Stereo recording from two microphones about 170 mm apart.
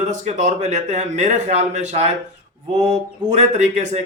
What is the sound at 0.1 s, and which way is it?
Speech, 45° right (ahead or behind).